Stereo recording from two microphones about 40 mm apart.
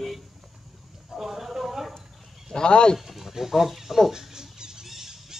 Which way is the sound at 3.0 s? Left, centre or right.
Centre.